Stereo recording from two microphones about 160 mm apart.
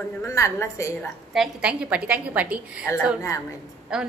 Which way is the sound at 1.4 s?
5° right (ahead or behind).